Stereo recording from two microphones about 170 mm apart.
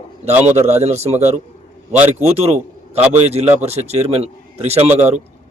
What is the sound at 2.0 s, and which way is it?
Speech, 10° right (ahead or behind).